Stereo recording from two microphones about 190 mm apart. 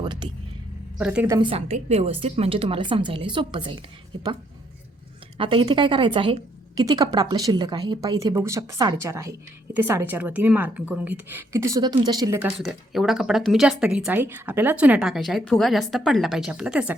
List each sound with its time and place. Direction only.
0.0 s speech: 25° right (ahead or behind)
0.9 s speech: 5° right (ahead or behind)
1.4 s speech: 30° right (ahead or behind)
5.4 s a woman's voice: 25° right (ahead or behind)
12.4 s speech: centre (ahead or behind)